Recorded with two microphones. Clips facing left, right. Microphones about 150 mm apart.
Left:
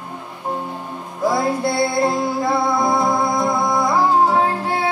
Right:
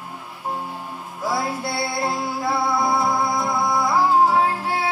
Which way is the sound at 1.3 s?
5° right (ahead or behind).